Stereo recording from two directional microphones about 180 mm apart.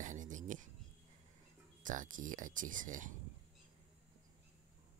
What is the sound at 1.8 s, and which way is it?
Speech, 45° right (ahead or behind).